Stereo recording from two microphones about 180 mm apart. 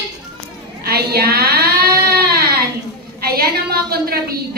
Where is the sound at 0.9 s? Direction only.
60° right (ahead or behind).